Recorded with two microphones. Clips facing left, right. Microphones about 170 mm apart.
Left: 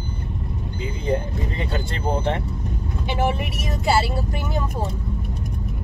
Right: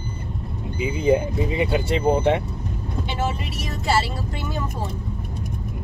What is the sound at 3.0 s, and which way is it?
Speech, 15° left (ahead or behind).